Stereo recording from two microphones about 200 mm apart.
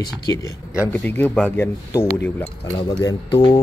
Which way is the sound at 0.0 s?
20° left (ahead or behind).